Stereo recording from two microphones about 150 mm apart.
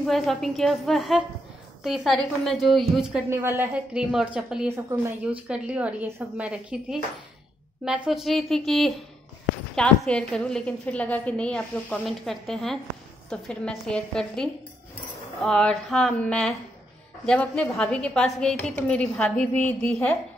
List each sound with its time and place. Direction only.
0.0 s a woman's voice: centre (ahead or behind)
3.3 s a woman's voice: 20° right (ahead or behind); by 20.2 s 5° left (ahead or behind)